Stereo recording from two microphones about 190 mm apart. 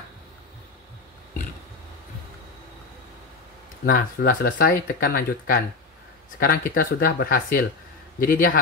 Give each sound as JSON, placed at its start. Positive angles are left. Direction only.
{"t": 3.8, "sound": "speech", "side_deg": 50}